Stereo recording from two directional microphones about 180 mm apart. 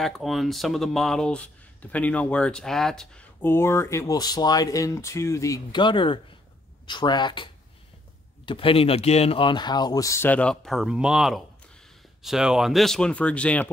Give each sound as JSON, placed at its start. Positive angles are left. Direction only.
{"t": 0.0, "sound": "speech", "side_deg": 0}
{"t": 8.5, "sound": "speech", "side_deg": 30}